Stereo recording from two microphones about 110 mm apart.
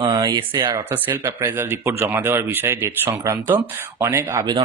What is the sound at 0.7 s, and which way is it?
Speech, 20° right (ahead or behind).